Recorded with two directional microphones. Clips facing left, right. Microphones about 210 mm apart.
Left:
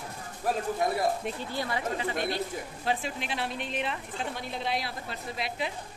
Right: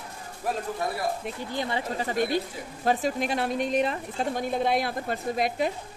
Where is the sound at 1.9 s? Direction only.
45° right (ahead or behind).